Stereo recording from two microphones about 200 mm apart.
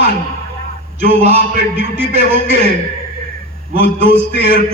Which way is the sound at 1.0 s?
30° right (ahead or behind).